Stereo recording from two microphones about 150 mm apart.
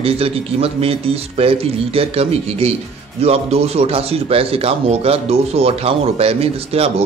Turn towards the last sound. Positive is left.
turn(degrees=-40)  # may be behind; listen again after turning